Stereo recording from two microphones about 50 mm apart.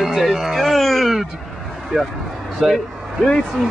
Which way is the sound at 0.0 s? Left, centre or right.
Centre.